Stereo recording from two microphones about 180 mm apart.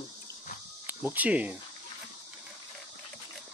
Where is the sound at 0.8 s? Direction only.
10° right (ahead or behind).